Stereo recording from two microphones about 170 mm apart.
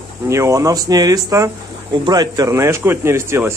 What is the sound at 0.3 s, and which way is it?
Speech, 15° right (ahead or behind).